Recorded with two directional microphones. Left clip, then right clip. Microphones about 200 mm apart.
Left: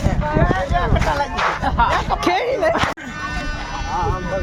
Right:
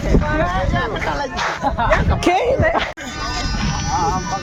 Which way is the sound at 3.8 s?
45° right (ahead or behind).